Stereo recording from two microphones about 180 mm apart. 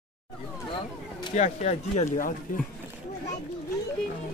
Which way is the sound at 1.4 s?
40° left (ahead or behind).